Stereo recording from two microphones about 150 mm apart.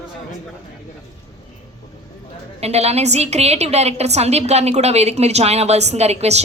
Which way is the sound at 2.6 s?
45° right (ahead or behind).